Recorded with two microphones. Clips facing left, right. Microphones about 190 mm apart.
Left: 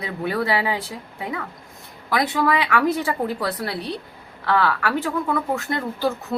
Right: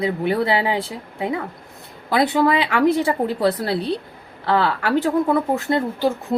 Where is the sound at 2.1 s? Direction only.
30° right (ahead or behind).